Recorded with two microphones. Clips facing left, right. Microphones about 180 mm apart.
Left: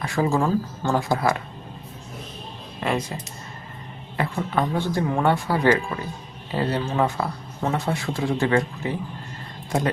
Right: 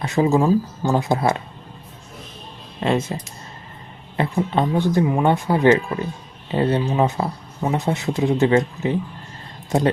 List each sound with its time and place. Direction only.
0.0 s speech: 20° right (ahead or behind)
2.8 s speech: 25° right (ahead or behind)
4.2 s speech: 20° right (ahead or behind)